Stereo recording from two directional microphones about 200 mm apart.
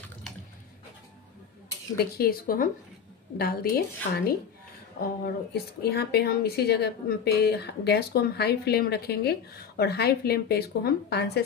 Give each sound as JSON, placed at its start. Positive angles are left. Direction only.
{"t": 2.1, "sound": "speech", "side_deg": 45}